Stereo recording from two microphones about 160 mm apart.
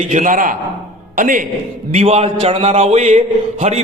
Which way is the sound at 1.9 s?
40° right (ahead or behind).